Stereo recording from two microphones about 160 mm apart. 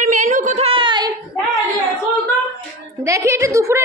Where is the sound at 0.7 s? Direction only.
30° right (ahead or behind).